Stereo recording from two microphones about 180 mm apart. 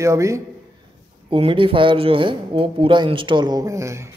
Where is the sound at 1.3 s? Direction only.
30° right (ahead or behind).